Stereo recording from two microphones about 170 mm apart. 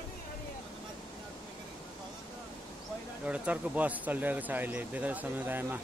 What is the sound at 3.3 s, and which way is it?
Speech, 10° right (ahead or behind).